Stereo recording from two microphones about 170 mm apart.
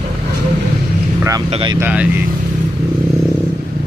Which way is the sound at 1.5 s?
30° right (ahead or behind).